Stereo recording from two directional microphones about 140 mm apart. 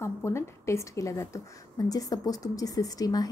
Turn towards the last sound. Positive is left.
turn(degrees=25)  # may be behind; listen again after turning